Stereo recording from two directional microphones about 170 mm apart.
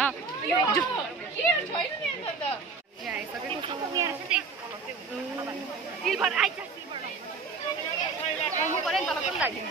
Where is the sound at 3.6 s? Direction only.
20° right (ahead or behind).